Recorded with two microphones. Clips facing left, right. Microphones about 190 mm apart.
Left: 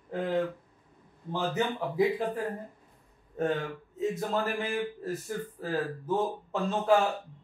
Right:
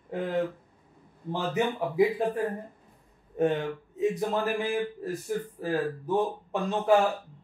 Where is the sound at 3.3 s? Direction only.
20° right (ahead or behind).